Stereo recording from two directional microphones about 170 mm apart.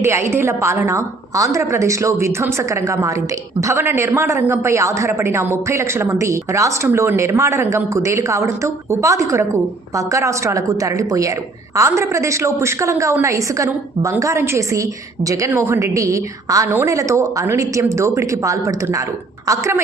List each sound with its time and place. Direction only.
0.0 s a woman's voice: 15° right (ahead or behind)